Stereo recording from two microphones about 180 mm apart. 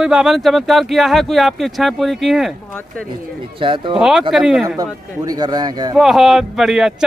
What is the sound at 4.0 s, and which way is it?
Speech, centre (ahead or behind).